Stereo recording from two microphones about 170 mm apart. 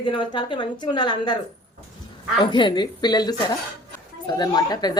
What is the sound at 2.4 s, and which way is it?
A child's voice, 25° left (ahead or behind).